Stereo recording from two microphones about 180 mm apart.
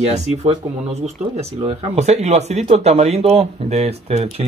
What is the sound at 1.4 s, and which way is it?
Speech, 35° right (ahead or behind).